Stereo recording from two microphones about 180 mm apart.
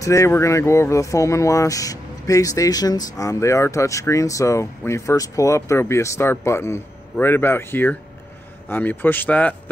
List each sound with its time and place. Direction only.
0.0 s speech: 15° left (ahead or behind)